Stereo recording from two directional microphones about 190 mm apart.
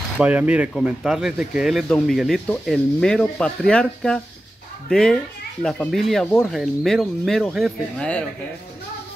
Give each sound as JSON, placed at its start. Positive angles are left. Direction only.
{"t": 0.2, "sound": "speech", "side_deg": -5}